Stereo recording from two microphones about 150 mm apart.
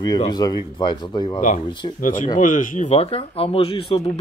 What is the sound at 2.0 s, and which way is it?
Speech, 60° left (ahead or behind).